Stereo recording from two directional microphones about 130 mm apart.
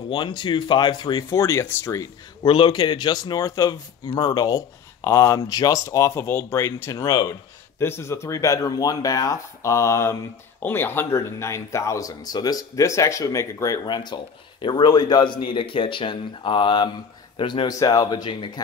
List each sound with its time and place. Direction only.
0.1 s speech: 40° left (ahead or behind); by 2.0 s 20° left (ahead or behind)
2.4 s speech: 40° left (ahead or behind)